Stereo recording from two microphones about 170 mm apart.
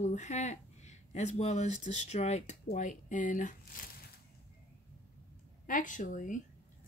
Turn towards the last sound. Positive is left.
turn(degrees=50)  # may be behind; listen again after turning